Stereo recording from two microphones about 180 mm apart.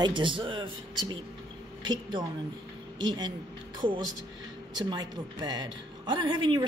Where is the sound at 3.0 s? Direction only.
25° right (ahead or behind).